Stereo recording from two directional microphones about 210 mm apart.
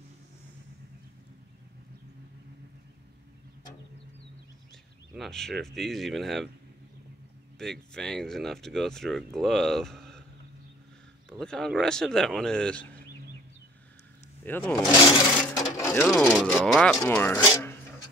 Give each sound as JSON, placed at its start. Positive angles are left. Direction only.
{"t": 5.1, "sound": "speech", "side_deg": 0}
{"t": 7.5, "sound": "speech", "side_deg": 0}
{"t": 11.2, "sound": "speech", "side_deg": 0}
{"t": 14.4, "sound": "speech", "side_deg": 5}
{"t": 14.9, "sound": "speech", "side_deg": 20}
{"t": 15.8, "sound": "speech", "side_deg": 10}